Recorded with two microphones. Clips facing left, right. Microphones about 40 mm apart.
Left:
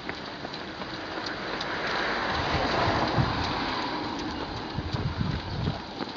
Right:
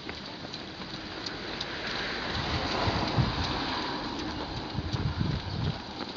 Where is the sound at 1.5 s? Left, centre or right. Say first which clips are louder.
Left 6 dB; centre.